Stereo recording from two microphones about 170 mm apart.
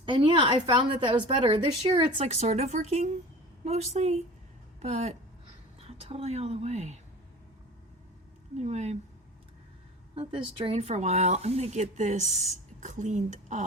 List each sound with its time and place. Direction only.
0.0 s a woman's voice: 30° right (ahead or behind)
2.2 s speech: 40° right (ahead or behind)
8.5 s speech: 40° right (ahead or behind)
10.2 s speech: 30° right (ahead or behind)
10.8 s a woman's voice: 40° right (ahead or behind)